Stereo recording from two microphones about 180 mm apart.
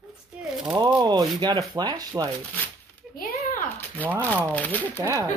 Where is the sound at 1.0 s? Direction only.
20° right (ahead or behind).